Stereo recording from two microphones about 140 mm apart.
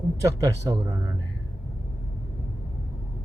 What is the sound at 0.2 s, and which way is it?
Speech, 20° right (ahead or behind).